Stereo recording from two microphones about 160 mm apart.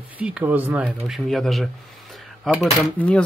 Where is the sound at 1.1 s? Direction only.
Centre (ahead or behind).